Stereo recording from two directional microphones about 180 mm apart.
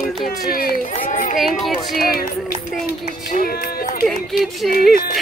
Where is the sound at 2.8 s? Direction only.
55° left (ahead or behind).